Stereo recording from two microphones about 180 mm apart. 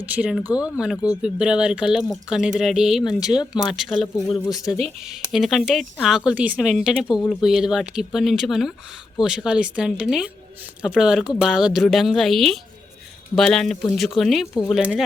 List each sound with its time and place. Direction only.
0.0 s speech: 10° right (ahead or behind)
4.3 s speech: 20° left (ahead or behind)
5.0 s speech: centre (ahead or behind)